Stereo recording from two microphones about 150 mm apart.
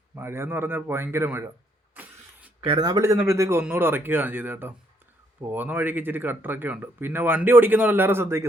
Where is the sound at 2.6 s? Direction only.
30° right (ahead or behind).